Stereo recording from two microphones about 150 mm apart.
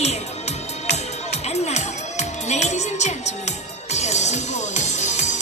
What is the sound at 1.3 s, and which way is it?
Music, 45° left (ahead or behind).